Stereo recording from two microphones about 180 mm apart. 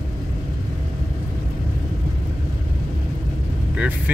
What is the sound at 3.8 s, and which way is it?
Vehicle, 10° right (ahead or behind).